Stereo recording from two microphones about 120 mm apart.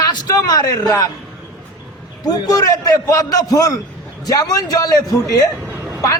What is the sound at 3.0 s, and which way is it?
A man's voice, 30° left (ahead or behind).